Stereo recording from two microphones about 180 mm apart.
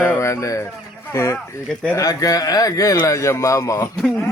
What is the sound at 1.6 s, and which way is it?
Speech, 5° left (ahead or behind).